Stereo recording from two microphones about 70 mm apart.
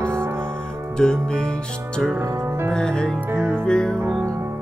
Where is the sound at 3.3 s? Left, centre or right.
Right.